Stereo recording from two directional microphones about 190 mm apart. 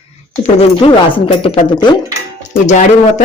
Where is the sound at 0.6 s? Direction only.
30° left (ahead or behind).